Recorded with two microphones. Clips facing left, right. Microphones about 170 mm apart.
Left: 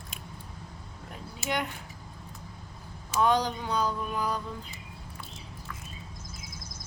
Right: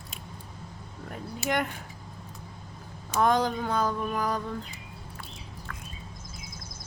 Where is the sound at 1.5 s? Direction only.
50° right (ahead or behind).